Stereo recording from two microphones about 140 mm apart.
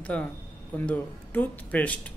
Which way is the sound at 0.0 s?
10° left (ahead or behind).